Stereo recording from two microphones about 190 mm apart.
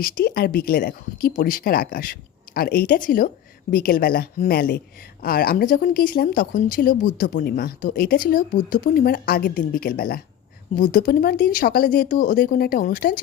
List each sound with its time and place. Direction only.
0.0 s speech: 50° left (ahead or behind)